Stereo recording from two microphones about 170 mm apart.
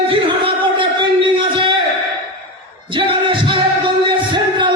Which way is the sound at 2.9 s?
30° right (ahead or behind).